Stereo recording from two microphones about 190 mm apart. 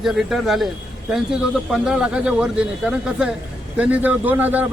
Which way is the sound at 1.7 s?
5° right (ahead or behind).